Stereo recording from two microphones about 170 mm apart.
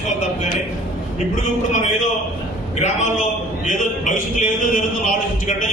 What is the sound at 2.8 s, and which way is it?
A man's voice, 45° left (ahead or behind).